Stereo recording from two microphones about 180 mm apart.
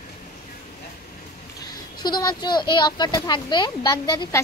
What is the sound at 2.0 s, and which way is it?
Speech, 25° left (ahead or behind).